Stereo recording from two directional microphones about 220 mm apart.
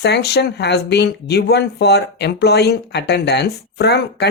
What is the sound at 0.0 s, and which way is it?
Speech, 50° left (ahead or behind).